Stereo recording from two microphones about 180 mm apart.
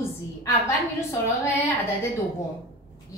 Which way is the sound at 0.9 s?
15° left (ahead or behind).